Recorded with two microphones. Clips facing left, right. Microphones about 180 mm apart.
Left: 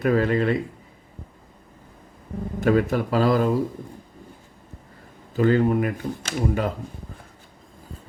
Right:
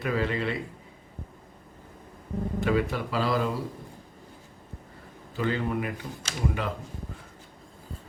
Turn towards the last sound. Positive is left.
turn(degrees=45)  # may be behind; listen again after turning